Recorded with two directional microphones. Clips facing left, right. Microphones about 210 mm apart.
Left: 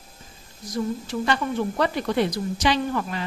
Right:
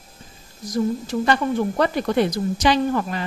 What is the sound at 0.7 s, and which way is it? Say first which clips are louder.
A woman's voice: right 4 dB; 45° right (ahead or behind).